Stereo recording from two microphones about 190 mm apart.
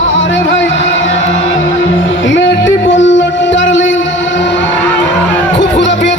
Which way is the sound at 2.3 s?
80° left.